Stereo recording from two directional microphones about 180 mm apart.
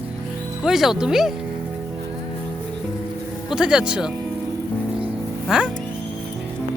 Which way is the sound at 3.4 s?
5° right (ahead or behind).